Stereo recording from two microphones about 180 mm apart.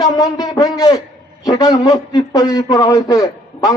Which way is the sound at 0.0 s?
20° left (ahead or behind).